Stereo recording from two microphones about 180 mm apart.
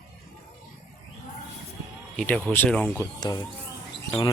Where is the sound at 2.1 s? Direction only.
5° left (ahead or behind).